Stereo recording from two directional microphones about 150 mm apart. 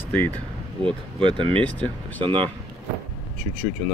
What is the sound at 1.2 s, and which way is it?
Speech, 35° right (ahead or behind).